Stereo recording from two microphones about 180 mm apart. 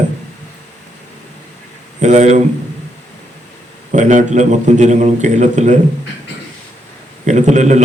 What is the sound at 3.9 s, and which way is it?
A man's voice, 45° right (ahead or behind).